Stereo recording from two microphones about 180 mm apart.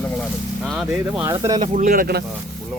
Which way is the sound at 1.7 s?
50° right (ahead or behind).